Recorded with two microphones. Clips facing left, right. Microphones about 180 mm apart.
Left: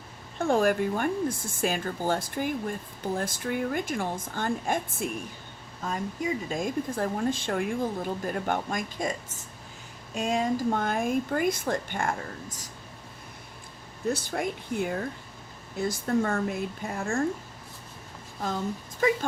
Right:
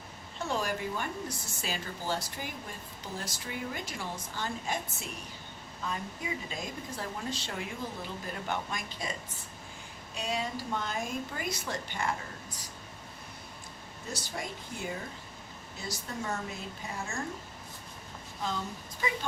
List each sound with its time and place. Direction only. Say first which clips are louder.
0.3 s a woman's voice: left 10 dB; 50° left (ahead or behind)
10.2 s a woman's voice: left 8 dB; 45° left (ahead or behind)
14.1 s speech: left 10 dB; 55° left (ahead or behind)